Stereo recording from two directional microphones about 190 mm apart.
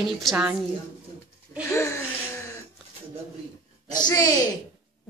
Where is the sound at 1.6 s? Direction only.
15° left (ahead or behind).